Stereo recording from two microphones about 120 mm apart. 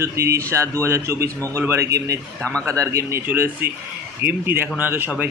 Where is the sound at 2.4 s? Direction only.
10° left (ahead or behind).